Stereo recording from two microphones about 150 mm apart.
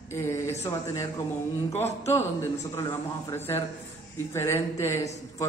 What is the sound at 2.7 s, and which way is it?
A man's voice, 20° left (ahead or behind).